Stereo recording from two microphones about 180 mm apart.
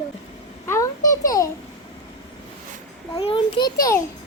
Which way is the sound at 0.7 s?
20° left (ahead or behind).